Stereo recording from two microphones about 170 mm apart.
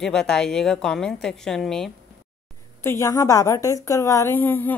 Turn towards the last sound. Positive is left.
turn(degrees=10)  # may be behind; listen again after turning